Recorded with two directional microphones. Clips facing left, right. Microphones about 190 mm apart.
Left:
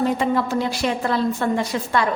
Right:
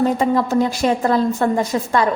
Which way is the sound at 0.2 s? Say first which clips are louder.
Right 4 dB; 40° right (ahead or behind).